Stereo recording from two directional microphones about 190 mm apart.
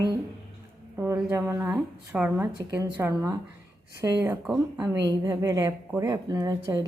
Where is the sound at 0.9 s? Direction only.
10° right (ahead or behind).